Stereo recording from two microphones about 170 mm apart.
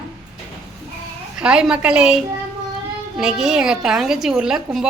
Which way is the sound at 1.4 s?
5° right (ahead or behind).